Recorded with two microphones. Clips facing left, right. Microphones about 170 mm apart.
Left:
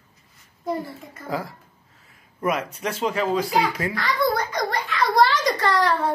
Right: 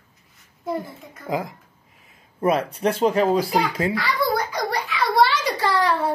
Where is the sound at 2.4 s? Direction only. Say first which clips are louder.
Right 5 dB; 30° right (ahead or behind).